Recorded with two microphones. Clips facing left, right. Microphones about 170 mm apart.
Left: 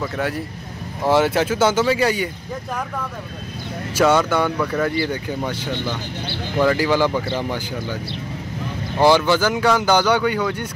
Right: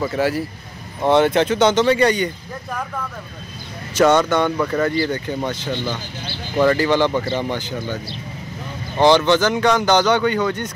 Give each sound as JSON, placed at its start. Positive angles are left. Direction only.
{"t": 0.0, "sound": "speech", "side_deg": 0}
{"t": 3.9, "sound": "speech", "side_deg": 5}